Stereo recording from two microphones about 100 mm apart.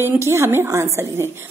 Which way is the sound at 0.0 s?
25° right (ahead or behind).